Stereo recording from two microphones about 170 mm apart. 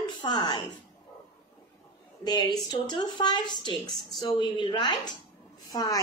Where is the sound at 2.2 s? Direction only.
25° left (ahead or behind).